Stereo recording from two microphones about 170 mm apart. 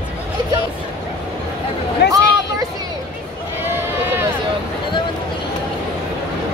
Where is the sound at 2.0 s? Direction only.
75° left (ahead or behind).